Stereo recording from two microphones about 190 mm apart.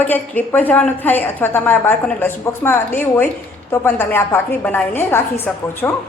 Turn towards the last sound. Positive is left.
turn(degrees=10)  # may be behind; listen again after turning